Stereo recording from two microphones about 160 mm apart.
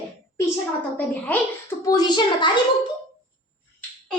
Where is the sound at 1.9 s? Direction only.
25° left (ahead or behind).